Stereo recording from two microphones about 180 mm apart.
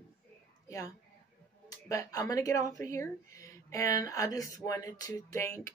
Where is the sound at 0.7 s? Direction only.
20° left (ahead or behind).